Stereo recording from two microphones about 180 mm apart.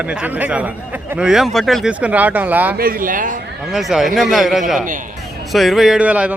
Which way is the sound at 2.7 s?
55° right (ahead or behind).